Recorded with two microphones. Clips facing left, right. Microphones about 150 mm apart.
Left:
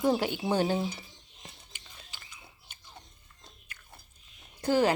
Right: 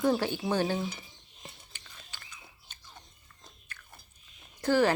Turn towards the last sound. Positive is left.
turn(degrees=15)  # may be behind; listen again after turning